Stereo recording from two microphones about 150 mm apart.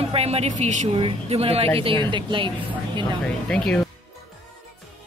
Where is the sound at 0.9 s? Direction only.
40° right (ahead or behind).